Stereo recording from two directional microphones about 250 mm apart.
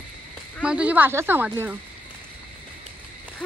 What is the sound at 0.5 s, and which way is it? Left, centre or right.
Speech, centre.